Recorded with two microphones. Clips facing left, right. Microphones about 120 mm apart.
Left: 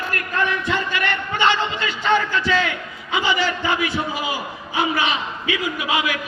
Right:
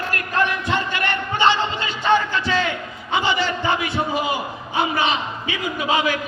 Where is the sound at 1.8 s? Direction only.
25° right (ahead or behind).